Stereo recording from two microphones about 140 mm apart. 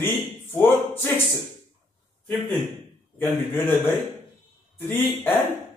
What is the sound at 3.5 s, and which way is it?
A man's voice, 15° left (ahead or behind).